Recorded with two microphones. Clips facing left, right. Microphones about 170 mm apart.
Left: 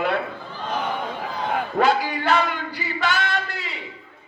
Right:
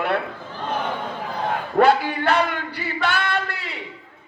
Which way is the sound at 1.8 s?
60° right (ahead or behind).